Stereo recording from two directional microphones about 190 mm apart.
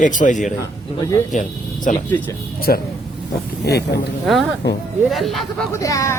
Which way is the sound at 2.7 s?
50° left (ahead or behind).